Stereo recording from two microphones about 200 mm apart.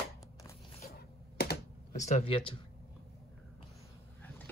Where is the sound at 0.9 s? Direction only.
55° left (ahead or behind).